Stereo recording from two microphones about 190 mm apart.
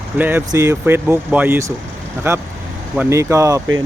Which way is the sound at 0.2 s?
10° right (ahead or behind).